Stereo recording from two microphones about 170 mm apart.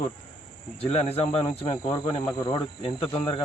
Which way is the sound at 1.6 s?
30° left (ahead or behind).